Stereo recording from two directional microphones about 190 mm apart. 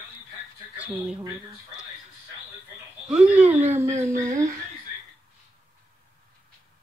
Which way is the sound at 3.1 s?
5° right (ahead or behind).